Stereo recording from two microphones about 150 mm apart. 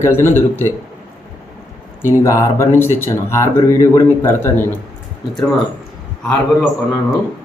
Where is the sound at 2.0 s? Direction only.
20° left (ahead or behind).